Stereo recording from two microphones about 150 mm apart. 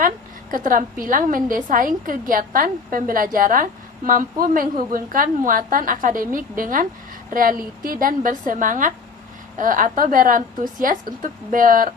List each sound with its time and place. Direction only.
0.5 s a woman's voice: 65° right (ahead or behind)